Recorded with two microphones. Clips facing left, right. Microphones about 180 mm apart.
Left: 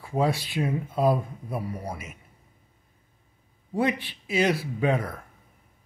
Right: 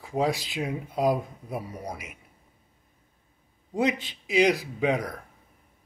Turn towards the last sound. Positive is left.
turn(degrees=-15)  # may be behind; listen again after turning